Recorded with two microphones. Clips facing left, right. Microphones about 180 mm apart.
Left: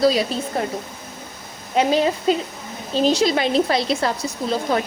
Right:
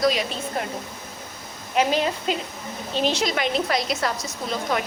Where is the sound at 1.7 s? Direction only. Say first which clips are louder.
Left 4 dB; 35° left (ahead or behind).